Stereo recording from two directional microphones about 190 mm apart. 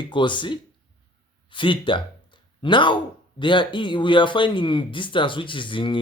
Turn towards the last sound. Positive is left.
turn(degrees=25)  # may be behind; listen again after turning